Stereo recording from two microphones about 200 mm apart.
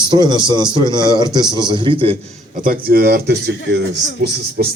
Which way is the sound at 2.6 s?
50° right (ahead or behind).